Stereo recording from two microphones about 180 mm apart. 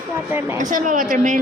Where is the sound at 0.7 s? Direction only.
45° right (ahead or behind).